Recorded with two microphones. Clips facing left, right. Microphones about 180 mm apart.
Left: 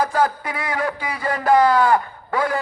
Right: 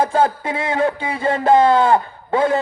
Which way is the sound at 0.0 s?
25° right (ahead or behind).